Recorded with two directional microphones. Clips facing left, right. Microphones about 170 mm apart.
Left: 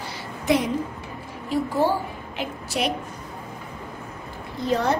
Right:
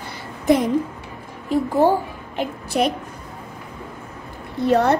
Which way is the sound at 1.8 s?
50° right (ahead or behind).